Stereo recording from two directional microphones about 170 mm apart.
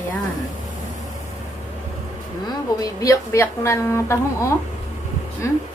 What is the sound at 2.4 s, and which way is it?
Speech, 20° left (ahead or behind).